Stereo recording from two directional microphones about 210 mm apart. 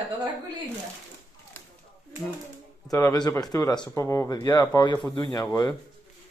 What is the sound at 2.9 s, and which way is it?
Speech, 15° left (ahead or behind).